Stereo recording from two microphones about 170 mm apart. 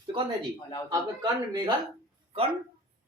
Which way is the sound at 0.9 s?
25° right (ahead or behind).